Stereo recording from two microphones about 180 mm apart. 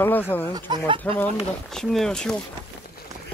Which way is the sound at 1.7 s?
Centre (ahead or behind).